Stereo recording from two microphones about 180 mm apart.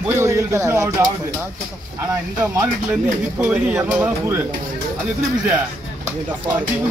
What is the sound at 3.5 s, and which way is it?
Speech, 10° right (ahead or behind).